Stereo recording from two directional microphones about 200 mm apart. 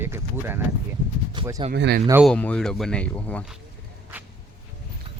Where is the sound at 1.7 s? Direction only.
55° right (ahead or behind).